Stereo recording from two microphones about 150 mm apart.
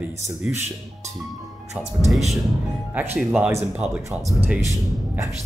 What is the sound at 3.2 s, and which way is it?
Speech, 5° right (ahead or behind).